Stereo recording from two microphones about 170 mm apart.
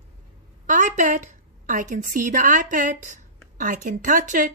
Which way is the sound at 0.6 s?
50° right (ahead or behind).